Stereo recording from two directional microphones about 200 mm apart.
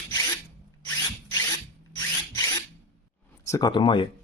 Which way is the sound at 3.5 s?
20° left (ahead or behind).